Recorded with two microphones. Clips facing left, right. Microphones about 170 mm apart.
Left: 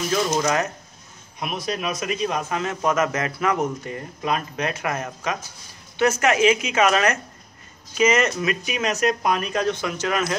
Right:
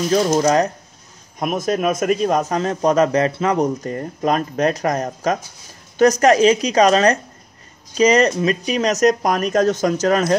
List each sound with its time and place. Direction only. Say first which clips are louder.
0.1 s speech: right 6 dB; 35° right (ahead or behind)
1.4 s speech: right 8 dB; 45° right (ahead or behind)